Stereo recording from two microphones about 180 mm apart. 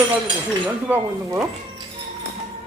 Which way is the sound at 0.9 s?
10° right (ahead or behind).